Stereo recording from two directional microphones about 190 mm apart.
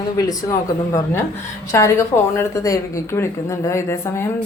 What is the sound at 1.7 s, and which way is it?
A woman's voice, 15° left (ahead or behind).